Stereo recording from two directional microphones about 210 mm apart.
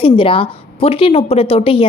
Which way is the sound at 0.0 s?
25° left (ahead or behind).